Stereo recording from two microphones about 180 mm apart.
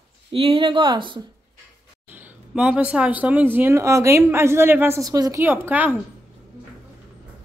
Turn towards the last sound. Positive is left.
turn(degrees=-10)  # may be behind; listen again after turning